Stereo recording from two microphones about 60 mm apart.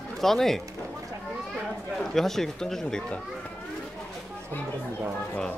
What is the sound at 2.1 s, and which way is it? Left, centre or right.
Speech, centre.